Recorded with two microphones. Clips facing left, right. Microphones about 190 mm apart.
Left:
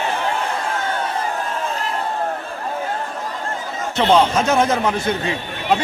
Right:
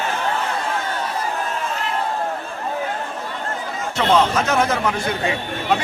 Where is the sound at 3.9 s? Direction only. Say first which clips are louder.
Left 2 dB; 25° left (ahead or behind).